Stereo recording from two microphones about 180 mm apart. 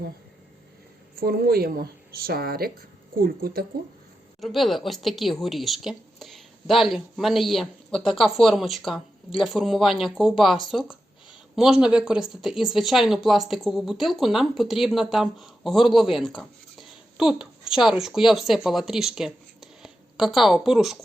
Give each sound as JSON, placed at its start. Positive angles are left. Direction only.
{"t": 1.2, "sound": "speech", "side_deg": -55}
{"t": 4.4, "sound": "speech", "side_deg": 0}